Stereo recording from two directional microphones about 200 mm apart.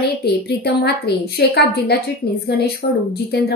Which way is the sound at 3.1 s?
55° left (ahead or behind).